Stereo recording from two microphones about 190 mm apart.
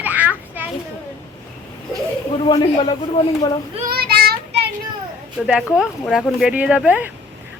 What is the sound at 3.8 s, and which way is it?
Child singing, 55° right (ahead or behind).